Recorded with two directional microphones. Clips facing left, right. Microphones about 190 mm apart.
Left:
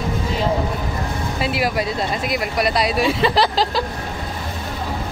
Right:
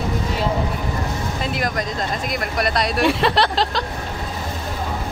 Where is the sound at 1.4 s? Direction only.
5° left (ahead or behind).